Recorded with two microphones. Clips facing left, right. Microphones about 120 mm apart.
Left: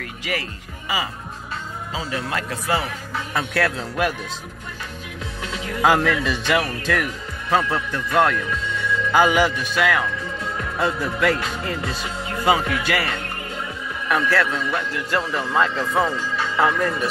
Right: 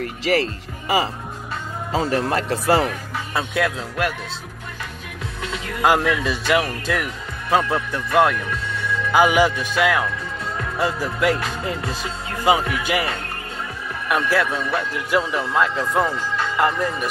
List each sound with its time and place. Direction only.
0.0 s speech: 35° right (ahead or behind)
1.9 s speech: 45° right (ahead or behind)
3.3 s speech: 15° right (ahead or behind)
3.7 s speech: centre (ahead or behind)
5.8 s speech: 10° right (ahead or behind)
15.2 s speech: centre (ahead or behind)